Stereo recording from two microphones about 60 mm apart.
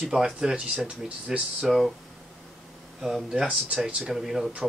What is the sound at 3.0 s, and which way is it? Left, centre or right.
Speech, centre.